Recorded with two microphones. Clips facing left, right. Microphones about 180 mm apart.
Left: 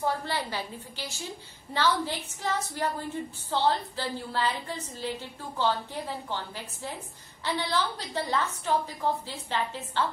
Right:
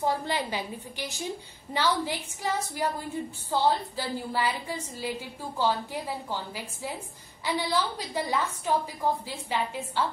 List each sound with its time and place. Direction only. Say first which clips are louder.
0.0 s a woman's voice: right 2 dB; 15° right (ahead or behind)